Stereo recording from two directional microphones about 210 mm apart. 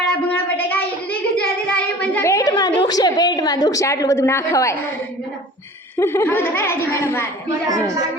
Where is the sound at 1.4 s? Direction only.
5° left (ahead or behind).